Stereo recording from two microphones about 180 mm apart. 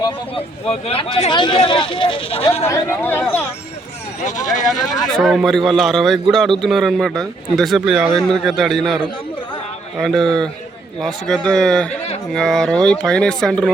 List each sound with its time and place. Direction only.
0.9 s speech: 30° left (ahead or behind)
2.6 s speech: 15° left (ahead or behind)
4.2 s speech: 40° left (ahead or behind)
5.1 s speech: centre (ahead or behind)
10.0 s speech: centre (ahead or behind)